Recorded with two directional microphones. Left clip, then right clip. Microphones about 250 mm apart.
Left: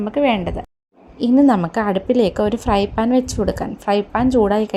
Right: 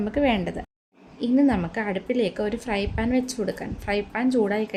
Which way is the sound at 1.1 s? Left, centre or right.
Left.